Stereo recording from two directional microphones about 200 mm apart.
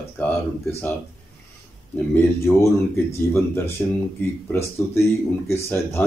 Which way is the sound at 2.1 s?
15° left (ahead or behind).